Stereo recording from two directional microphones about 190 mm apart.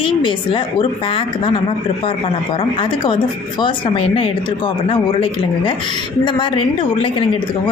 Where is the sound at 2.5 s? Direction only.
25° left (ahead or behind).